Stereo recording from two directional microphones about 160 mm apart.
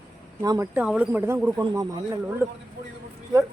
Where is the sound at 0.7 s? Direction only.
5° right (ahead or behind).